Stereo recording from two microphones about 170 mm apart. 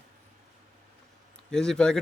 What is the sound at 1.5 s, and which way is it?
Speech, 5° left (ahead or behind).